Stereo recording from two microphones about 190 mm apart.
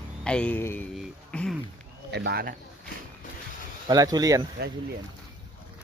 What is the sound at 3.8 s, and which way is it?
Speech, 20° right (ahead or behind).